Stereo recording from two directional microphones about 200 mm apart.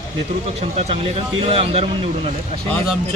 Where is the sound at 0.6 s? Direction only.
30° right (ahead or behind).